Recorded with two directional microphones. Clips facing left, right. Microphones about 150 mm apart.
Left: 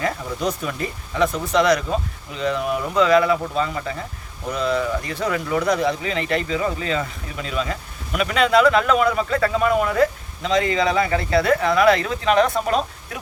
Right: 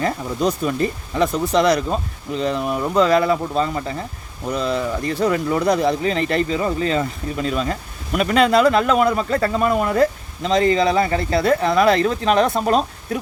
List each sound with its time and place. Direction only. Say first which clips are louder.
0.0 s speech: right 3 dB; 35° right (ahead or behind)